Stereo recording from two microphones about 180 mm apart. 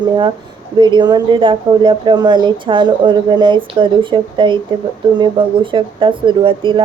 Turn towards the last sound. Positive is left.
turn(degrees=-25)  # may be behind; listen again after turning